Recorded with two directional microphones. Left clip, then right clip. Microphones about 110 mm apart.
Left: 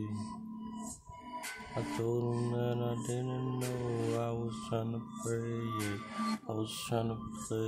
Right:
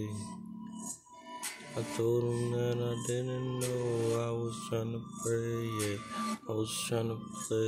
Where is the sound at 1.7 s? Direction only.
20° left (ahead or behind).